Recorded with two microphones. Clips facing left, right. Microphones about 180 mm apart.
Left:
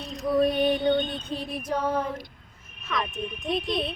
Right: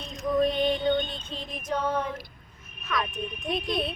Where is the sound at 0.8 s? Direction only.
40° left (ahead or behind).